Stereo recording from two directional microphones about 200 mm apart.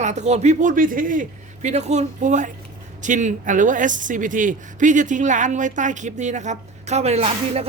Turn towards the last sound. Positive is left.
turn(degrees=-30)  # may be behind; listen again after turning